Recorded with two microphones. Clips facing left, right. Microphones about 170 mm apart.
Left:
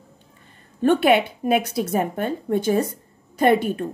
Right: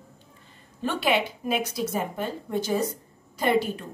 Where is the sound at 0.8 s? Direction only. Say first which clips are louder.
Left 8 dB; 55° left (ahead or behind).